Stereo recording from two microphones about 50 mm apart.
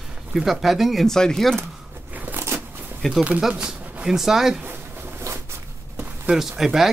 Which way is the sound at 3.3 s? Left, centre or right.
Centre.